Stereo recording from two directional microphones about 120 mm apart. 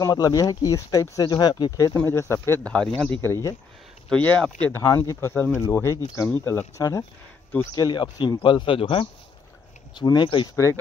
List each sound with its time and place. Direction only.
0.0 s speech: 30° left (ahead or behind)
2.0 s speech: 20° left (ahead or behind)
2.6 s speech: 10° left (ahead or behind)
3.2 s speech: 20° left (ahead or behind)
4.1 s speech: 10° left (ahead or behind)
4.8 s speech: 25° left (ahead or behind)
7.7 s speech: 35° left (ahead or behind)
10.5 s speech: 25° left (ahead or behind)